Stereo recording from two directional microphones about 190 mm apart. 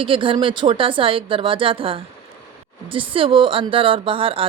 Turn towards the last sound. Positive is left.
turn(degrees=-30)  # may be behind; listen again after turning